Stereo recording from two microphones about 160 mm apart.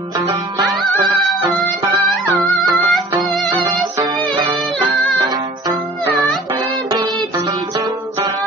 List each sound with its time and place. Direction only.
2.0 s music: centre (ahead or behind)
4.0 s music: 30° right (ahead or behind)
6.9 s music: 25° right (ahead or behind)